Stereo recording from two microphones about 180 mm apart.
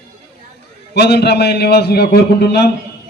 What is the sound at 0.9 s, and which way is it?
A man's voice, 65° left (ahead or behind).